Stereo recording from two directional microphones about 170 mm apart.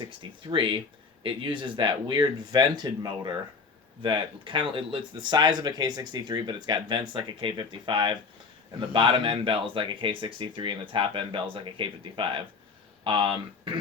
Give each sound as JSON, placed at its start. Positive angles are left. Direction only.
{"t": 0.2, "sound": "speech", "side_deg": -30}